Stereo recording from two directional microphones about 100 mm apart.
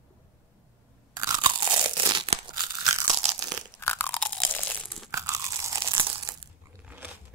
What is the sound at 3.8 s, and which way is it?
Crunch, 20° left (ahead or behind).